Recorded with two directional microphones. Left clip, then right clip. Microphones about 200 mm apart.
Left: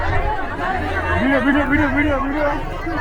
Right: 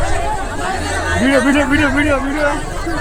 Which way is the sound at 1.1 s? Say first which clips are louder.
Right 4 dB; 25° right (ahead or behind).